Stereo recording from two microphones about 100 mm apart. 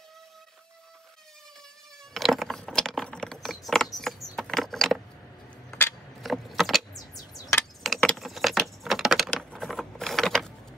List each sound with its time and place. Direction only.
2.1 s gears: centre (ahead or behind)
6.2 s keys jangling: centre (ahead or behind)
7.3 s a sound: 30° left (ahead or behind)
7.8 s keys jangling: centre (ahead or behind)
8.2 s typing: centre (ahead or behind)
9.4 s a sound: 5° left (ahead or behind)